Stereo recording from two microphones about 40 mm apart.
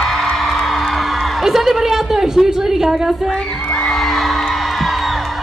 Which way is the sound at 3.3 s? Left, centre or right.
Left.